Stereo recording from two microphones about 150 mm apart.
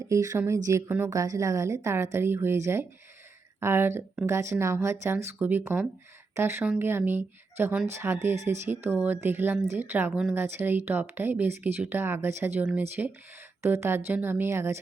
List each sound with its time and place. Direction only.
0.1 s a woman's voice: 20° right (ahead or behind)